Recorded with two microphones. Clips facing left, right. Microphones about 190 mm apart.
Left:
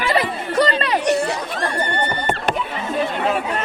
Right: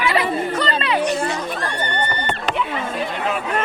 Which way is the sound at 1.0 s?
70° left (ahead or behind).